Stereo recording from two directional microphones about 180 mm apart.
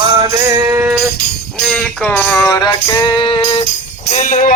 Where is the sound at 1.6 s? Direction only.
5° left (ahead or behind); by 3.6 s 30° left (ahead or behind).